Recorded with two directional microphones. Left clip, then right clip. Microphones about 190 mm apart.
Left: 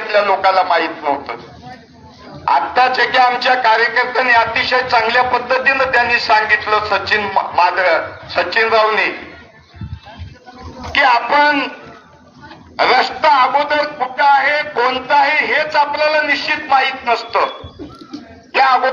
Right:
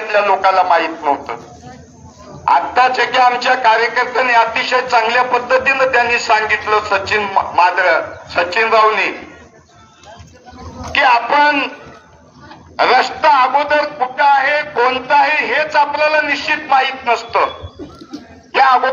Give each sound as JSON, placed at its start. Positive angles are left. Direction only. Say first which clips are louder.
{"t": 0.1, "sound": "speech", "louder": "even", "side_deg": 35}
{"t": 2.4, "sound": "speech", "louder": "right 1 dB", "side_deg": 40}
{"t": 10.9, "sound": "speech", "louder": "even", "side_deg": 35}
{"t": 12.7, "sound": "speech", "louder": "right 1 dB", "side_deg": 35}
{"t": 18.5, "sound": "a man's voice", "louder": "right 1 dB", "side_deg": 25}